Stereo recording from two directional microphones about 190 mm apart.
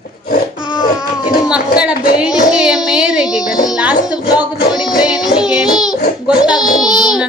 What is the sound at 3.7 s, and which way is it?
Music, 5° right (ahead or behind).